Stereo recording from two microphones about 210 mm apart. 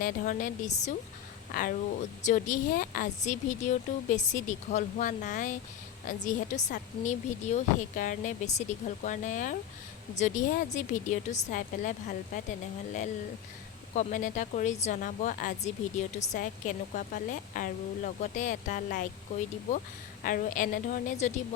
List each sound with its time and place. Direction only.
0.0 s a woman's voice: 40° left (ahead or behind)
2.2 s a woman's voice: 40° left (ahead or behind)
13.9 s a woman's voice: 35° left (ahead or behind)